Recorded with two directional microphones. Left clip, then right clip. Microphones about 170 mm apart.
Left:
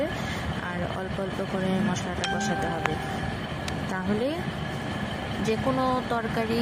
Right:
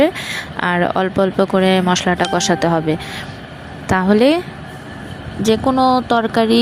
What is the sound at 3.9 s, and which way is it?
Speech, 55° right (ahead or behind).